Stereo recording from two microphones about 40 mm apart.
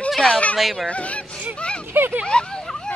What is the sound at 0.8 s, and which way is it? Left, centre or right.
Speech, left.